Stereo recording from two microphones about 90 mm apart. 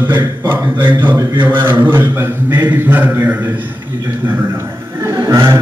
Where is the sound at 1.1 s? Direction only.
40° right (ahead or behind).